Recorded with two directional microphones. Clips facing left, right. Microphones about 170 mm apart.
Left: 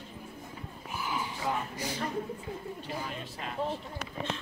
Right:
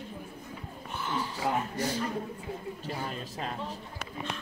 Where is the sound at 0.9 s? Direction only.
10° left (ahead or behind).